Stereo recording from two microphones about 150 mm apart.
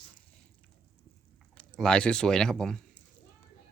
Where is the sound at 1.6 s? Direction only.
5° left (ahead or behind).